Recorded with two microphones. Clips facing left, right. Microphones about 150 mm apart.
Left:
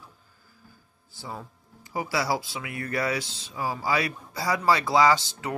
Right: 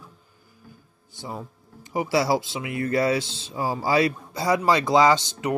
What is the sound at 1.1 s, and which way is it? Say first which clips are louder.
Speech: right 3 dB; 20° right (ahead or behind).